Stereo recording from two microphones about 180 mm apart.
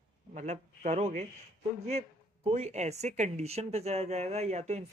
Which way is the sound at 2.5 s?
35° right (ahead or behind).